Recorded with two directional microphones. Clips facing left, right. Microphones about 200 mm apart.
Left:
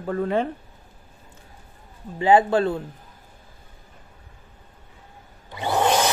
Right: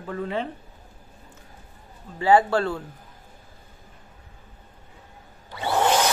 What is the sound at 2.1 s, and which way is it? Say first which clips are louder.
Speech: left 2 dB; 20° left (ahead or behind).